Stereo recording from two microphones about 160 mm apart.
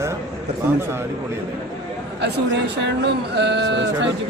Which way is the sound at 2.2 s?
90° right.